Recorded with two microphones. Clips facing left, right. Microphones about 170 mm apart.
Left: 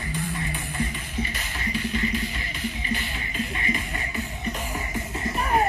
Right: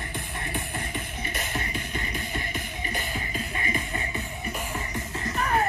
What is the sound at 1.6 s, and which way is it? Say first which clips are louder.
Music: left 6 dB; 50° right (ahead or behind).